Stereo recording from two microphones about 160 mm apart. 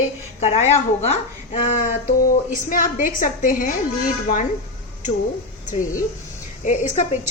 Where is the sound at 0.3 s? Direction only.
40° left (ahead or behind).